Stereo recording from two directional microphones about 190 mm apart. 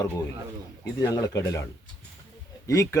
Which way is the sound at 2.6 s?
15° left (ahead or behind).